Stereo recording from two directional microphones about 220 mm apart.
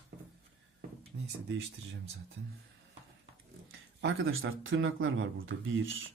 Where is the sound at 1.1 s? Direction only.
50° right (ahead or behind).